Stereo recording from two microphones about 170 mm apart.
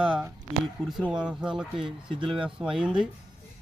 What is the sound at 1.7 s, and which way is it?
Speech, 30° right (ahead or behind).